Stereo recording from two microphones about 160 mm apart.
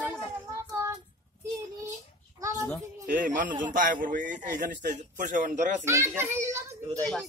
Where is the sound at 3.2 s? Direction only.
55° right (ahead or behind).